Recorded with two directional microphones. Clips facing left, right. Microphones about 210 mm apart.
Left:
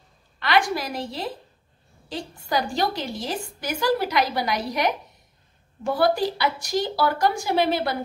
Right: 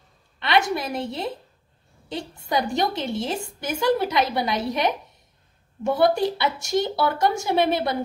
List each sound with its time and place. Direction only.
0.4 s a woman's voice: 25° right (ahead or behind)